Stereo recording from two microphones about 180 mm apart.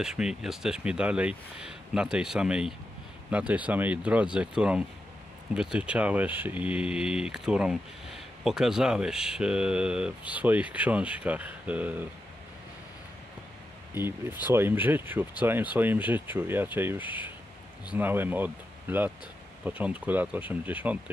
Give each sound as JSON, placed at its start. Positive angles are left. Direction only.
{"t": 0.0, "sound": "speech", "side_deg": -5}
{"t": 13.9, "sound": "speech", "side_deg": -10}